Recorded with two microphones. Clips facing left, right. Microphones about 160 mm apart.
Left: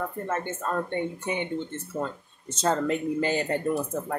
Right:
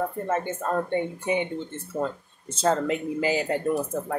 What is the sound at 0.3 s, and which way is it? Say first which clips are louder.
Speech: right 2 dB; 15° right (ahead or behind).